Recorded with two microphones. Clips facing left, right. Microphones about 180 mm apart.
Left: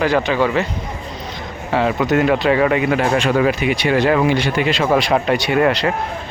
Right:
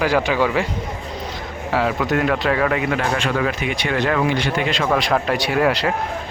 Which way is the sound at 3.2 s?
15° left (ahead or behind).